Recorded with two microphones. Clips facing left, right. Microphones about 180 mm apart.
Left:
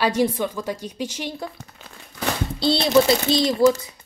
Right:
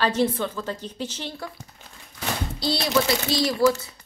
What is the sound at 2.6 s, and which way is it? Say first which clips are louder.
A child's voice: left 6 dB; 25° left (ahead or behind).